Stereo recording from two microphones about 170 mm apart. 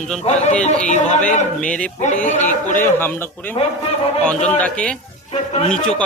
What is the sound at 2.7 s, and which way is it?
Speech, 10° left (ahead or behind).